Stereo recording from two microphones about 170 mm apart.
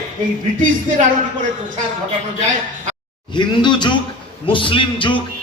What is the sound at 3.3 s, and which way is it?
A man's voice, 25° left (ahead or behind).